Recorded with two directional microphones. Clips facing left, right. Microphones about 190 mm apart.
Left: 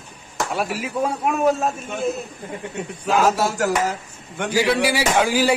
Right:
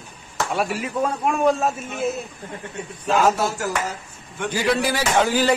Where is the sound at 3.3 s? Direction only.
90° left.